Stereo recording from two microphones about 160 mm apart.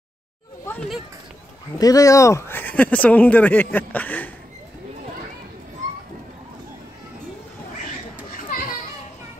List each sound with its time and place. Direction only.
1.8 s speech: 20° left (ahead or behind)
8.3 s children playing: 60° left (ahead or behind)